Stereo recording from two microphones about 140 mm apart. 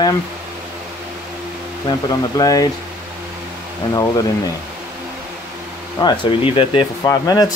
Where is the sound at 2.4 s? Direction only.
25° left (ahead or behind).